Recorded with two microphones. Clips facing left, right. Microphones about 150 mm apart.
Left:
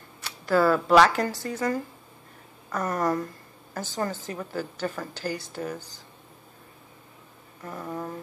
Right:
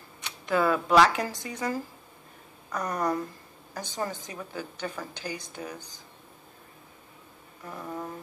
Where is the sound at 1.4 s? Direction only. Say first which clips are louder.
Left 4 dB; 15° right (ahead or behind).